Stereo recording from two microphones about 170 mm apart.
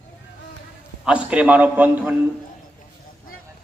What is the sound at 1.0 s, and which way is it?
Speech, 5° right (ahead or behind).